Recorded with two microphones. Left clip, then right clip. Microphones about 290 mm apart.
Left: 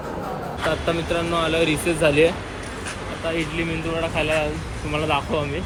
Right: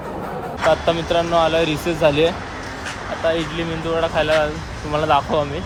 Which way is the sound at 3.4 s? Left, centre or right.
Centre.